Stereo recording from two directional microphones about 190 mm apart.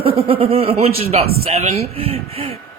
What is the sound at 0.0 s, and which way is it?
Speech, 30° right (ahead or behind).